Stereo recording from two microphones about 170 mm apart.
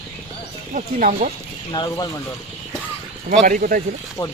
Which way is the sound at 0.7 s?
50° right (ahead or behind).